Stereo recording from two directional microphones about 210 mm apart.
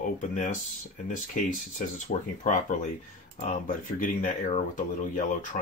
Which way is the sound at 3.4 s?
35° left (ahead or behind).